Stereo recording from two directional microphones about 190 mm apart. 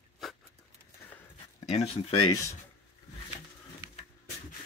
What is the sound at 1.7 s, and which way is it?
Speech, 30° left (ahead or behind).